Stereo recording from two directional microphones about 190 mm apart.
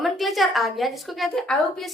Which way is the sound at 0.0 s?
Centre (ahead or behind).